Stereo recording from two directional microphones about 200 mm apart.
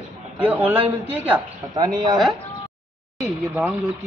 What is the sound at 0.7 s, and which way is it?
Speech, 10° right (ahead or behind).